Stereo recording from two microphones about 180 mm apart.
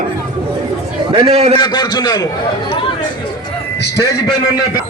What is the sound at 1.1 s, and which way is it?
Speech, 35° right (ahead or behind).